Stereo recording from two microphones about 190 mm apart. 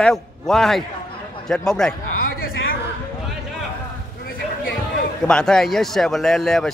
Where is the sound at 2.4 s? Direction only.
50° left (ahead or behind).